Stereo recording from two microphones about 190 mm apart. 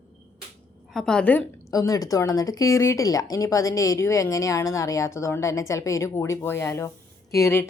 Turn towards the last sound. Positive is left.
turn(degrees=15)  # may be behind; listen again after turning